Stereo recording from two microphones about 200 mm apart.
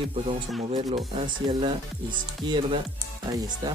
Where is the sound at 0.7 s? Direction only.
30° right (ahead or behind).